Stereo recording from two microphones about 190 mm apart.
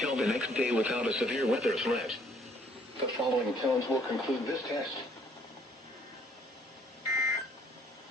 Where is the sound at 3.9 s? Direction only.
20° left (ahead or behind).